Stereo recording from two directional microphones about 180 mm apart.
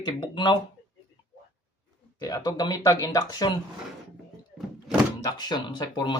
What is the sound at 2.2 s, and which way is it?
Speech, 20° left (ahead or behind).